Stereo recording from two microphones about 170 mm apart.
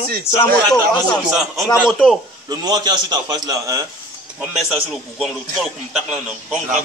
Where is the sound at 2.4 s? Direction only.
25° right (ahead or behind).